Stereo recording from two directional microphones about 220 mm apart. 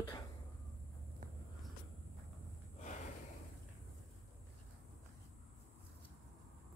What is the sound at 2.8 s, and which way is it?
Gasp, 35° left (ahead or behind).